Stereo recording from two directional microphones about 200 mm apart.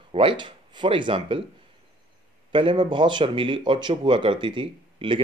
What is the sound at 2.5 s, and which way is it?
Speech, 25° right (ahead or behind).